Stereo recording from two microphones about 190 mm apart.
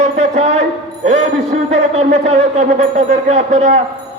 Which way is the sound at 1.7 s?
35° right (ahead or behind).